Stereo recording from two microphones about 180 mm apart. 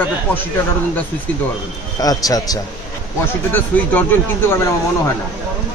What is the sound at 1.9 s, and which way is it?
Speech, 20° left (ahead or behind).